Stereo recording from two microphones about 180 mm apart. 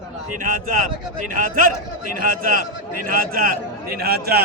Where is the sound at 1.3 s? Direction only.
50° right (ahead or behind).